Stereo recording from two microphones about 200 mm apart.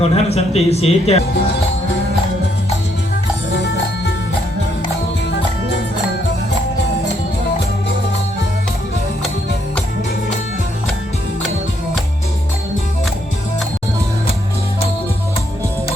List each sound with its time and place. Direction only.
0.0 s speech: 30° left (ahead or behind)